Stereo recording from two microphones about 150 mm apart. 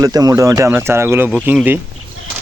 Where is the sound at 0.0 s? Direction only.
25° right (ahead or behind).